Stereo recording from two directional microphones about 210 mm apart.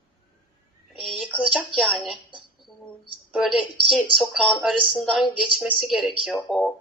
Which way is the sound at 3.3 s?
Centre (ahead or behind).